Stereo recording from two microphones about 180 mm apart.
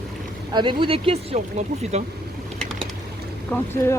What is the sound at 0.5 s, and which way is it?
Speech, 25° right (ahead or behind).